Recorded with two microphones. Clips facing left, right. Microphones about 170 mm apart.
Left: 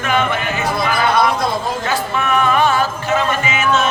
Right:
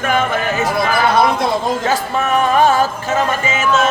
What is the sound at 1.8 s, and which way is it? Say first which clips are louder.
Music: right 2 dB; 40° right (ahead or behind).